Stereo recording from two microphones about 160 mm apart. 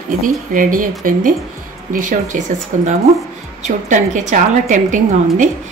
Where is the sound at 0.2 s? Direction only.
55° right (ahead or behind).